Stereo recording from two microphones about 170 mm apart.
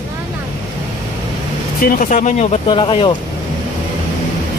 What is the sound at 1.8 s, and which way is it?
Speech, 55° left (ahead or behind).